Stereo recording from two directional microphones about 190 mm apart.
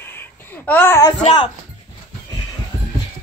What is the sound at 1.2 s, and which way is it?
Speech, 35° left (ahead or behind).